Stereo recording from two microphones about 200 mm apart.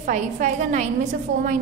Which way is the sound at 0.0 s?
40° right (ahead or behind).